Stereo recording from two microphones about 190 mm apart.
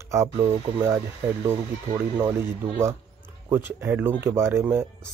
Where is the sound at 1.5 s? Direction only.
15° right (ahead or behind).